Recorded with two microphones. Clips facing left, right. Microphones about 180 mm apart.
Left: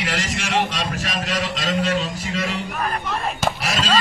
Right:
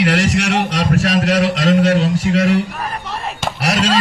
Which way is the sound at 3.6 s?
75° right (ahead or behind).